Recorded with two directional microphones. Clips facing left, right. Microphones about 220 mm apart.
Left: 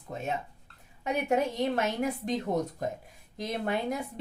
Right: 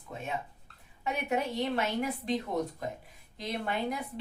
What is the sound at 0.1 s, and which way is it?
A woman's voice, 40° left (ahead or behind).